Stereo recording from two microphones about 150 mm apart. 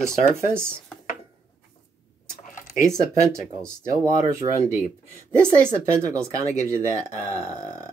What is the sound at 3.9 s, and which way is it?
Speech, 20° right (ahead or behind).